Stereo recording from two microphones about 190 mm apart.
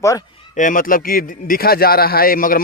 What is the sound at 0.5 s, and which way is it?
A man's voice, 45° left (ahead or behind).